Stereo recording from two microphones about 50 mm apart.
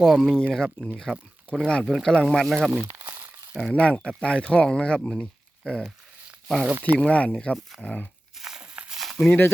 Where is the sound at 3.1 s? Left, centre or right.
Right.